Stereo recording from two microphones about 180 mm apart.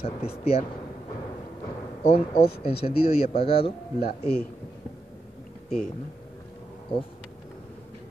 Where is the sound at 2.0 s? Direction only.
35° left (ahead or behind).